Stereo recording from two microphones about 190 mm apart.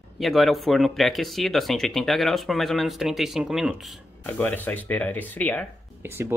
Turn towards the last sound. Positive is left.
turn(degrees=-10)  # may be behind; listen again after turning